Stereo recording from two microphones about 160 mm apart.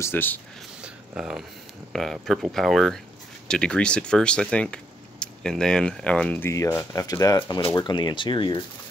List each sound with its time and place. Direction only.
0.0 s speech: 15° left (ahead or behind)
0.8 s a sound: 5° right (ahead or behind)
1.9 s speech: centre (ahead or behind)
6.5 s speech: 20° left (ahead or behind)